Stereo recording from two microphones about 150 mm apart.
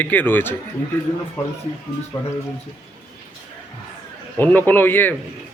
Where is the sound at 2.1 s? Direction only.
15° left (ahead or behind).